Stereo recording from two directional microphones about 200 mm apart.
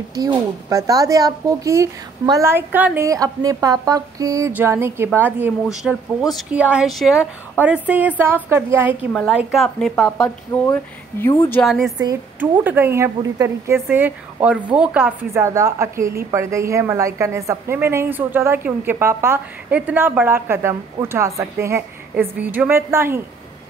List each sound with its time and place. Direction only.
0.1 s speech: 15° right (ahead or behind)
9.1 s speech: 5° left (ahead or behind)
10.0 s speech: 15° left (ahead or behind)
11.6 s speech: centre (ahead or behind)
12.0 s speech: 15° right (ahead or behind)